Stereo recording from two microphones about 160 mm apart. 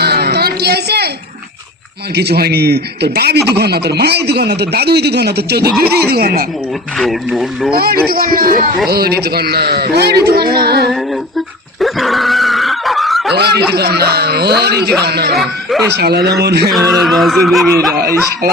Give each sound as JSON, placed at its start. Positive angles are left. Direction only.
{"t": 0.0, "sound": "a sound", "side_deg": -90}
{"t": 2.1, "sound": "speech", "side_deg": -90}
{"t": 5.9, "sound": "speech", "side_deg": -75}
{"t": 6.9, "sound": "speech", "side_deg": 0}
{"t": 7.8, "sound": "a man's voice", "side_deg": -70}
{"t": 8.9, "sound": "a man's voice", "side_deg": -80}
{"t": 11.8, "sound": "a sound", "side_deg": 0}
{"t": 13.3, "sound": "a man's voice", "side_deg": -90}
{"t": 16.7, "sound": "speech", "side_deg": 0}